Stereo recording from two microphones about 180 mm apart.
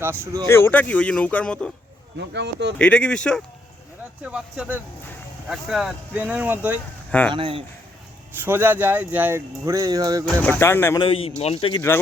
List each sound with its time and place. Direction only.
0.0 s speech: 15° right (ahead or behind)
0.4 s speech: 15° left (ahead or behind)
2.1 s speech: 70° right (ahead or behind)
2.7 s speech: 5° left (ahead or behind)
4.2 s speech: 5° right (ahead or behind)
7.3 s speech: 30° right (ahead or behind)
8.4 s speech: 10° right (ahead or behind)
10.6 s speech: 15° left (ahead or behind)
11.0 s speech: 30° left (ahead or behind)